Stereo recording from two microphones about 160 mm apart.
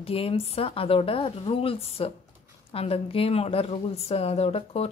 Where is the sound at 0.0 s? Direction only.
35° left (ahead or behind).